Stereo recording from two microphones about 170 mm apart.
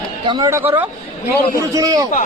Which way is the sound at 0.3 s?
20° right (ahead or behind).